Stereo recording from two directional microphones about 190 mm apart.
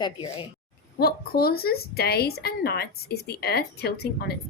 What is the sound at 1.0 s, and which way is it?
Speech, 55° left (ahead or behind).